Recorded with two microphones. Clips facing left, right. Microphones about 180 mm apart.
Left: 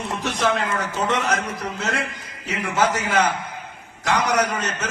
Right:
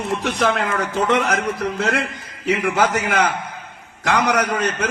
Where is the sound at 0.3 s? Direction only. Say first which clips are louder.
Right 1 dB; 55° right (ahead or behind).